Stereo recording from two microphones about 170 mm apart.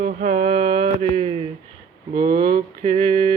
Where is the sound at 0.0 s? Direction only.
40° right (ahead or behind).